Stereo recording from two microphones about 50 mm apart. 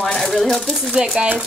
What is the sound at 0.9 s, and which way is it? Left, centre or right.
Speech, centre.